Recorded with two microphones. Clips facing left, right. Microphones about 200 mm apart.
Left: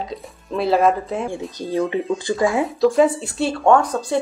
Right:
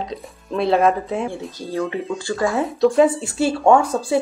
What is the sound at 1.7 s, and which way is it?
Speech, 20° left (ahead or behind).